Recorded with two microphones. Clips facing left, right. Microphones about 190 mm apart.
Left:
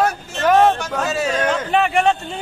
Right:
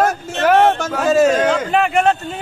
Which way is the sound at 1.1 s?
50° right (ahead or behind).